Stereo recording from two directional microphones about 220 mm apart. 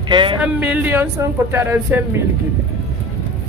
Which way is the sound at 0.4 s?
5° right (ahead or behind).